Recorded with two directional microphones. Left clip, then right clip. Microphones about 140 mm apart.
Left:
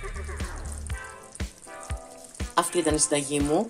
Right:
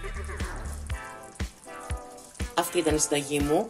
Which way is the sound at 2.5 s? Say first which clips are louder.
Left 1 dB; 15° left (ahead or behind).